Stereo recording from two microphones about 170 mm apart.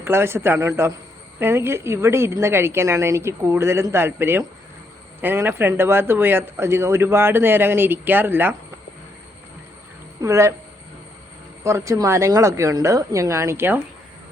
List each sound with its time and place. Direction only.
0.0 s speech: 15° right (ahead or behind)
10.2 s speech: 15° right (ahead or behind)
11.6 s speech: 15° right (ahead or behind)